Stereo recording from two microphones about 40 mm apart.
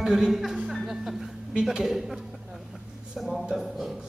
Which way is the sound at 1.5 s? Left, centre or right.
Centre.